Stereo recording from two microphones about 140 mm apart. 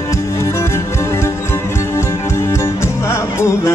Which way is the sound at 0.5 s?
20° left (ahead or behind).